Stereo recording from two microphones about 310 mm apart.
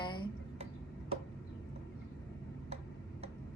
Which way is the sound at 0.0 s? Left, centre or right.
Centre.